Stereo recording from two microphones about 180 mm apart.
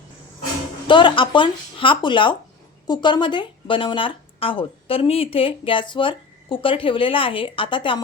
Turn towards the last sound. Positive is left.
turn(degrees=30)  # may be behind; listen again after turning